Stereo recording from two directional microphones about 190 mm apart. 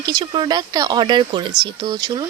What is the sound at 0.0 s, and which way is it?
Speech, 20° right (ahead or behind).